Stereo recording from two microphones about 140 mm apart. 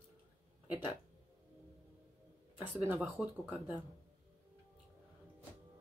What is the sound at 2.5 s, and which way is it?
Speech, 20° right (ahead or behind).